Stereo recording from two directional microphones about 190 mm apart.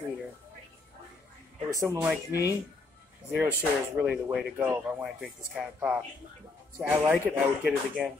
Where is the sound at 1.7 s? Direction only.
15° right (ahead or behind).